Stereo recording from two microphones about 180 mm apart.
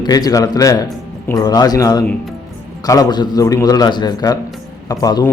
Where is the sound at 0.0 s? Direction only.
20° left (ahead or behind).